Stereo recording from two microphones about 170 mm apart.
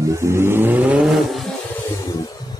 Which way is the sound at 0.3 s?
15° right (ahead or behind).